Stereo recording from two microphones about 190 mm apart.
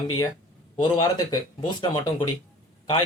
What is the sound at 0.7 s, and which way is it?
Speech, 20° left (ahead or behind).